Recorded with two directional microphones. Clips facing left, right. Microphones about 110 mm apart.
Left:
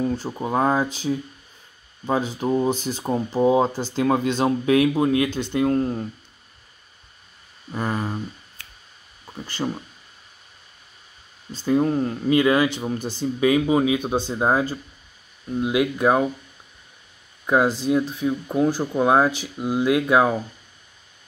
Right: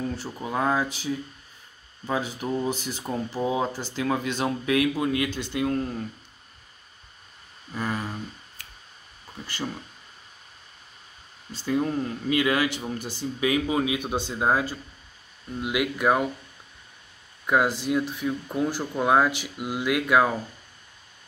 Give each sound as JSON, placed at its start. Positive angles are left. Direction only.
{"t": 0.3, "sound": "speech", "side_deg": 30}
{"t": 1.1, "sound": "speech", "side_deg": 40}
{"t": 3.4, "sound": "speech", "side_deg": 35}
{"t": 7.7, "sound": "speech", "side_deg": 30}
{"t": 9.2, "sound": "a sound", "side_deg": 20}
{"t": 11.6, "sound": "speech", "side_deg": 30}
{"t": 17.5, "sound": "speech", "side_deg": 25}
{"t": 19.3, "sound": "speech", "side_deg": 30}